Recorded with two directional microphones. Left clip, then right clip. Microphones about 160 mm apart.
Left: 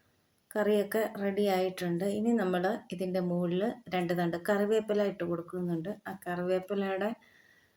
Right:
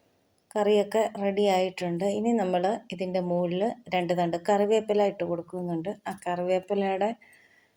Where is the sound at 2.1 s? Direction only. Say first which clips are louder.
Right 4 dB; 5° right (ahead or behind).